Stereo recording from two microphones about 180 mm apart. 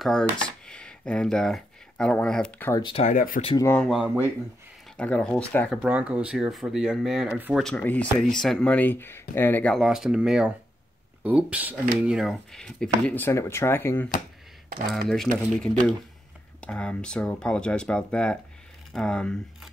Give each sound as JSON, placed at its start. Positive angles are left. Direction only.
{"t": 0.0, "sound": "speech", "side_deg": 5}
{"t": 2.7, "sound": "speech", "side_deg": 25}
{"t": 3.0, "sound": "speech", "side_deg": 45}
{"t": 3.5, "sound": "speech", "side_deg": 15}
{"t": 3.8, "sound": "speech", "side_deg": -5}
{"t": 5.8, "sound": "speech", "side_deg": -5}
{"t": 7.6, "sound": "speech", "side_deg": 5}
{"t": 16.6, "sound": "speech", "side_deg": 5}